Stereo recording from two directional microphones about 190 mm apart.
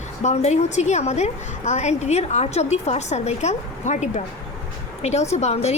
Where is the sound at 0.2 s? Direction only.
35° left (ahead or behind).